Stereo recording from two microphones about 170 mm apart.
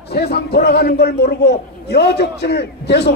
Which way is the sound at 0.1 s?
70° left (ahead or behind).